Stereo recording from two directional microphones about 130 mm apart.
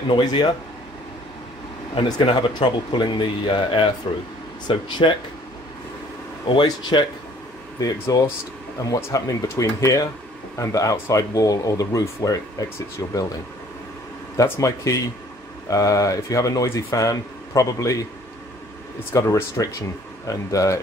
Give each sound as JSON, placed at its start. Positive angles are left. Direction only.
{"t": 0.1, "sound": "speech", "side_deg": 35}
{"t": 2.0, "sound": "speech", "side_deg": 35}
{"t": 6.5, "sound": "speech", "side_deg": 35}
{"t": 14.3, "sound": "speech", "side_deg": 25}
{"t": 19.1, "sound": "speech", "side_deg": 20}